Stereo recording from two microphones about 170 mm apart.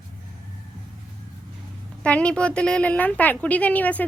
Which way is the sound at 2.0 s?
5° left (ahead or behind).